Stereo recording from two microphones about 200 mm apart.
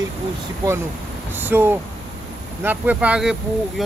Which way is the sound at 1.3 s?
10° right (ahead or behind).